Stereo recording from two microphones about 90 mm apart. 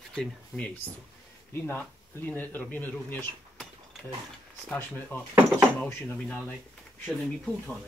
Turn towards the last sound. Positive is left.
turn(degrees=10)  # may be behind; listen again after turning